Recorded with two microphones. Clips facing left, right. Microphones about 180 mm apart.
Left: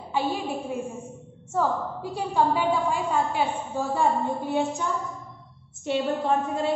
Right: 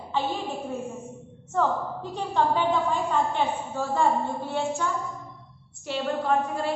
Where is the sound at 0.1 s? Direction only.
10° left (ahead or behind).